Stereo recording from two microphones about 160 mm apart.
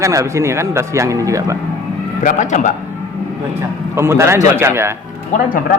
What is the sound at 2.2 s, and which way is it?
Speech, 50° left (ahead or behind).